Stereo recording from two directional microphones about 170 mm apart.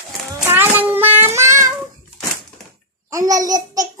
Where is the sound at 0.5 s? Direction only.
10° right (ahead or behind).